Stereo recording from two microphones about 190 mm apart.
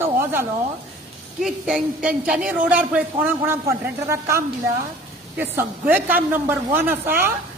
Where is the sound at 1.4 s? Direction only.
5° right (ahead or behind).